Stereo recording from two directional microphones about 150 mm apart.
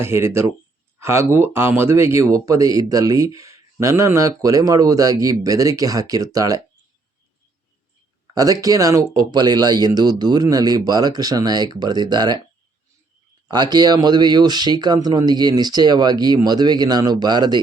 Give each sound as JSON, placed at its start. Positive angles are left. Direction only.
{"t": 0.0, "sound": "speech", "side_deg": -15}
{"t": 8.3, "sound": "speech", "side_deg": -25}
{"t": 13.5, "sound": "speech", "side_deg": -30}